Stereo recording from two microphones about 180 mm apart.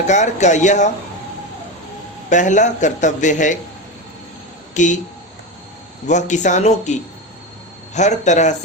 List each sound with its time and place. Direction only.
0.1 s speech: 40° left (ahead or behind)
2.3 s a man's voice: 45° left (ahead or behind)
4.7 s speech: 45° left (ahead or behind)
6.1 s speech: 40° left (ahead or behind)